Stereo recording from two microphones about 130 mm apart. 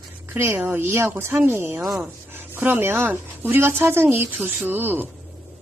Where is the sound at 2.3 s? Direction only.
15° right (ahead or behind).